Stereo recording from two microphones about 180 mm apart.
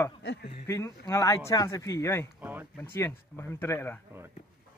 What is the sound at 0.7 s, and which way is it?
Speech, 15° left (ahead or behind).